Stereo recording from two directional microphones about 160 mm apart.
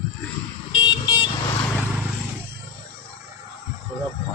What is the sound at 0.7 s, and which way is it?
Vehicle, 30° left (ahead or behind).